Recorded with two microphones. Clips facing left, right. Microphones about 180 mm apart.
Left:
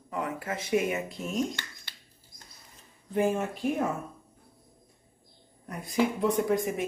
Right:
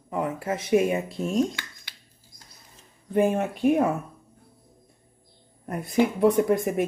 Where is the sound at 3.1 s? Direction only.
60° right (ahead or behind).